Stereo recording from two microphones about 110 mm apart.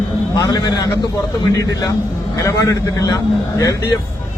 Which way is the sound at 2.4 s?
35° left (ahead or behind).